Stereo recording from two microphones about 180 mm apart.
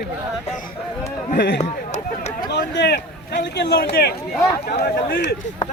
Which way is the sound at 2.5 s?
70° left (ahead or behind).